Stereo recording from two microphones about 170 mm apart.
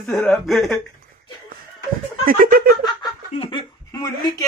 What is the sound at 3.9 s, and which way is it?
Speech, 25° left (ahead or behind).